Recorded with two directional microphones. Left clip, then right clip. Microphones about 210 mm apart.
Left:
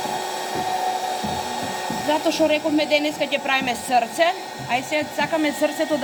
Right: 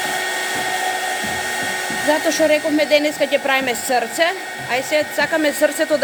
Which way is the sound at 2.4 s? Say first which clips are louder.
Right 4 dB; 45° right (ahead or behind).